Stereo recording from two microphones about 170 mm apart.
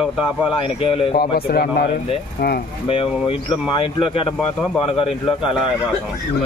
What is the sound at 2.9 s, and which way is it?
Speech, 30° left (ahead or behind).